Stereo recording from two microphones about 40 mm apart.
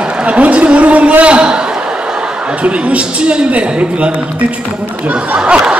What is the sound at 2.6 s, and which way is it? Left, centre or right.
A man's voice, right.